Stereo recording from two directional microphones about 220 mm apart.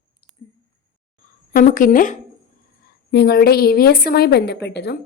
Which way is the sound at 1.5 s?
35° left (ahead or behind).